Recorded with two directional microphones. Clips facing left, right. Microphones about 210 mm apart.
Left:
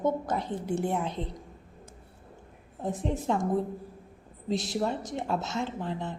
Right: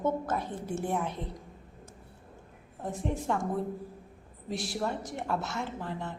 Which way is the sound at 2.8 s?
20° left (ahead or behind).